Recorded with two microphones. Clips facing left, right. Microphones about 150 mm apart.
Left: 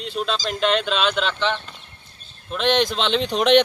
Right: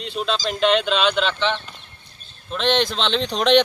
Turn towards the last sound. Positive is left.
turn(degrees=10)  # may be behind; listen again after turning